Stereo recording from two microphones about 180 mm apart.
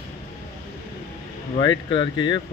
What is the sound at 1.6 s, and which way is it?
Speech, 25° left (ahead or behind).